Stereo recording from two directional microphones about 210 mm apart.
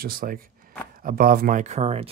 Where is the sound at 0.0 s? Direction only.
45° right (ahead or behind).